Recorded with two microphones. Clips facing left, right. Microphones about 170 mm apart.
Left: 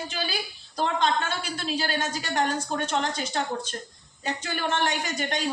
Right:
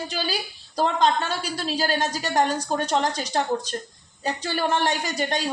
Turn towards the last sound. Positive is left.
turn(degrees=-35)  # may be behind; listen again after turning